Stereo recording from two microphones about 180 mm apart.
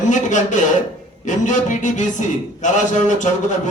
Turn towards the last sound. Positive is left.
turn(degrees=45)  # may be behind; listen again after turning